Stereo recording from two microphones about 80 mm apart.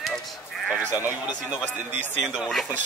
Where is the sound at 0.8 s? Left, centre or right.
Right.